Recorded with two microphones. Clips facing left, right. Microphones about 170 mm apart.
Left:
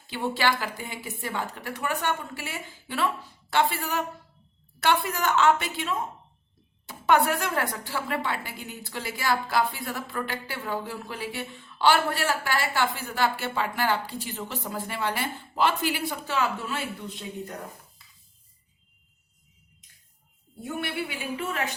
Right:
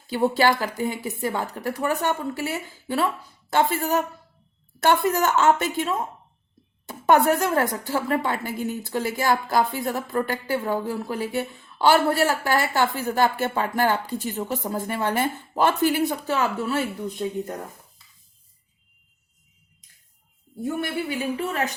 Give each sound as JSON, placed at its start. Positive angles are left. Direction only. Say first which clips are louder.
{"t": 0.1, "sound": "a woman's voice", "louder": "right 6 dB", "side_deg": -40}
{"t": 20.8, "sound": "a woman's voice", "louder": "right 5 dB", "side_deg": -40}